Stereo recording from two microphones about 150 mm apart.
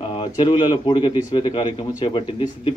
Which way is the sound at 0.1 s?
35° left (ahead or behind).